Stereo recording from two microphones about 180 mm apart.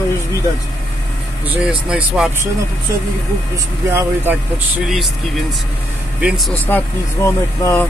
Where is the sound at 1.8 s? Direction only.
5° right (ahead or behind).